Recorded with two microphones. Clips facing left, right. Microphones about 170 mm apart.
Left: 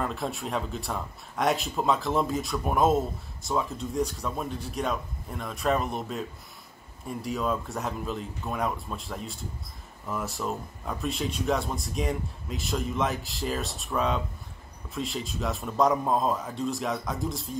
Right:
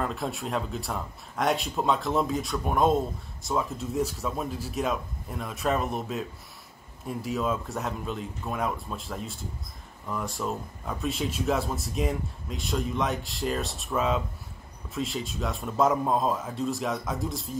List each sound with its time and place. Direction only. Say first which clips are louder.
0.0 s speech: even; centre (ahead or behind)